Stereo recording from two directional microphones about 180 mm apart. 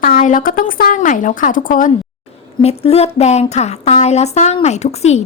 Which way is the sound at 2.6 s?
35° left (ahead or behind).